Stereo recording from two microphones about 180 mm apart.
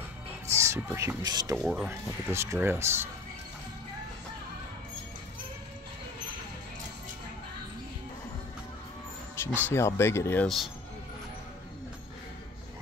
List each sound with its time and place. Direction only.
0.6 s speech: 15° right (ahead or behind)
1.6 s speech: centre (ahead or behind)
1.9 s speech: 15° right (ahead or behind)
9.4 s speech: 10° left (ahead or behind)